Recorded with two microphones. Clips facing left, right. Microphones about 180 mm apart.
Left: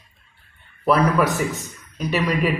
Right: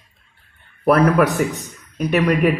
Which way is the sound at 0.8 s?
55° right (ahead or behind).